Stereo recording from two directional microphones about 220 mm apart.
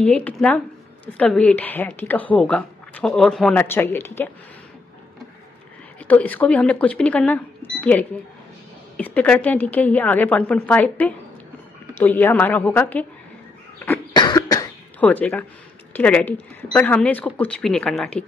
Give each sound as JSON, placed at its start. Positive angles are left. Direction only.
{"t": 0.0, "sound": "a woman's voice", "side_deg": 5}
{"t": 5.9, "sound": "a woman's voice", "side_deg": 5}
{"t": 14.1, "sound": "cough", "side_deg": 15}
{"t": 15.9, "sound": "speech", "side_deg": 5}